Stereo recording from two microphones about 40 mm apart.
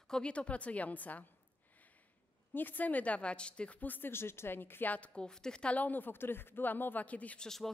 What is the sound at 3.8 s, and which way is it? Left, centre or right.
Speech, left.